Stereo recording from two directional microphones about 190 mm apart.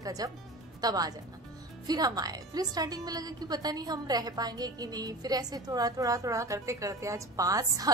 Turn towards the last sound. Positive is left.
turn(degrees=-20)  # may be behind; listen again after turning